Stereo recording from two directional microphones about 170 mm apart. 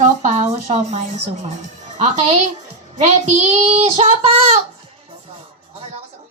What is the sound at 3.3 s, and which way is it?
Child singing, 45° right (ahead or behind).